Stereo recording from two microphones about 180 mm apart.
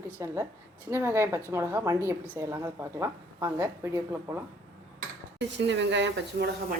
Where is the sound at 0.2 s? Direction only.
15° right (ahead or behind).